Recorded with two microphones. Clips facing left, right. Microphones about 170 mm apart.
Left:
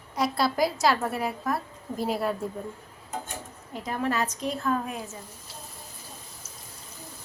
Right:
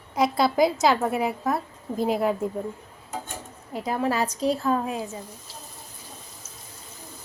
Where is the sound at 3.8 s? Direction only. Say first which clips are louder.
Right 3 dB; 30° right (ahead or behind).